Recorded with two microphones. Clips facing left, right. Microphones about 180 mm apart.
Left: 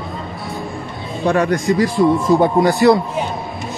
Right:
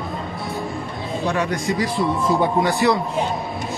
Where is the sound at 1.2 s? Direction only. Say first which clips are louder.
Left 7 dB; 50° left (ahead or behind).